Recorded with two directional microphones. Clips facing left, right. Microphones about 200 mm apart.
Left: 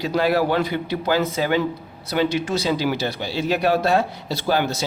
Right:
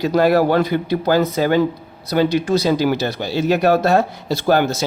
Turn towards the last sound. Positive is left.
turn(degrees=-45)  # may be behind; listen again after turning